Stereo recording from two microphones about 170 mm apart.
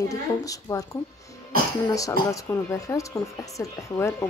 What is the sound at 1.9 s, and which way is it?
Speech, 20° left (ahead or behind).